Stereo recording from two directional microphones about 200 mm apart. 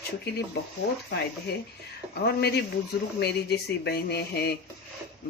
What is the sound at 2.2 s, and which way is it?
Speech, 55° left (ahead or behind).